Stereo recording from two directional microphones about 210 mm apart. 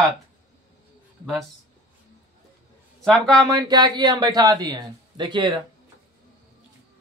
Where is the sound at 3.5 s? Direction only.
20° right (ahead or behind).